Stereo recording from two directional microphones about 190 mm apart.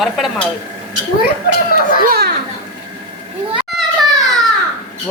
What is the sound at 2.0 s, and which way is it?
Speech, 55° right (ahead or behind).